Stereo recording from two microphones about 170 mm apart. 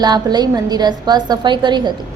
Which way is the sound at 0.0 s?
25° right (ahead or behind).